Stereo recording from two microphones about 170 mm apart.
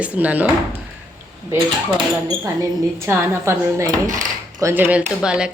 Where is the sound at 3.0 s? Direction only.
15° right (ahead or behind).